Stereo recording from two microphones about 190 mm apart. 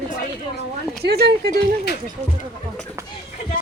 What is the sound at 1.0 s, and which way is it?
Speech, 55° right (ahead or behind).